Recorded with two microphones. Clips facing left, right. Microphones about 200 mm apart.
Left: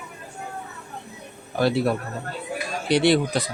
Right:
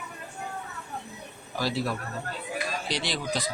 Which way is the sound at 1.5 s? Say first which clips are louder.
Left 8 dB; 60° left (ahead or behind).